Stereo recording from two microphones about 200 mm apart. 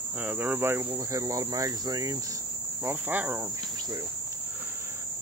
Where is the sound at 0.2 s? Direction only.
10° right (ahead or behind).